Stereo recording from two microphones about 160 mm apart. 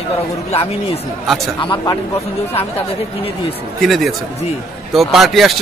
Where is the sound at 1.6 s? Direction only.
25° left (ahead or behind).